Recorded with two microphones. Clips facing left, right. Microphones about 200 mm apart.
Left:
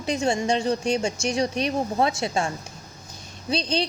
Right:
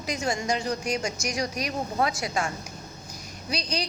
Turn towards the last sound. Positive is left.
turn(degrees=25)  # may be behind; listen again after turning